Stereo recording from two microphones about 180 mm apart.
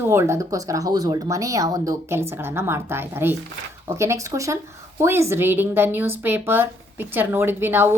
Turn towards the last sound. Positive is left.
turn(degrees=-10)  # may be behind; listen again after turning